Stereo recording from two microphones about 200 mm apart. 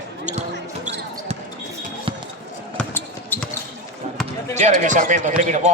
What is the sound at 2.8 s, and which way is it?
Basketball bounce, 10° left (ahead or behind).